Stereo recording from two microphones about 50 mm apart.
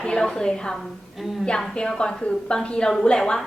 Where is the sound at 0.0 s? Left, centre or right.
Centre.